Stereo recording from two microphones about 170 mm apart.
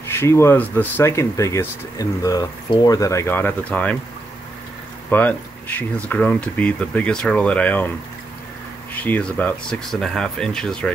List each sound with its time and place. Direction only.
0.1 s speech: 15° left (ahead or behind)
5.1 s speech: 10° left (ahead or behind)
8.9 s speech: 10° left (ahead or behind)